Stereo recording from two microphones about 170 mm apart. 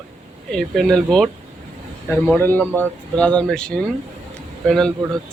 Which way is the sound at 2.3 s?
10° left (ahead or behind).